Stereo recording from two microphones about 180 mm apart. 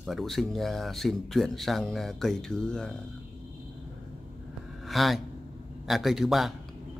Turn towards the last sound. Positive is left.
turn(degrees=0)  # may be behind; listen again after turning